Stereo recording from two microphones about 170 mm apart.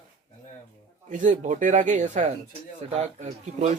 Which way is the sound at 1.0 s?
45° right (ahead or behind).